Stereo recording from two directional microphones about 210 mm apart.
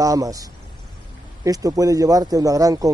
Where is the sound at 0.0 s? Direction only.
15° right (ahead or behind).